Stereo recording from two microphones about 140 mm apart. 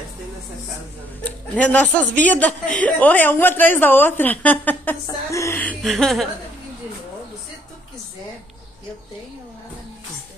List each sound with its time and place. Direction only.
1.2 s a man's voice: 10° left (ahead or behind)
5.8 s speech: centre (ahead or behind)